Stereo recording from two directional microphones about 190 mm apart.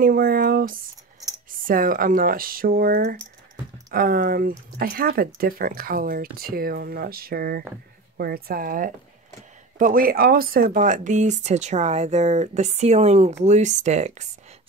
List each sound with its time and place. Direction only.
0.0 s speech: 50° right (ahead or behind)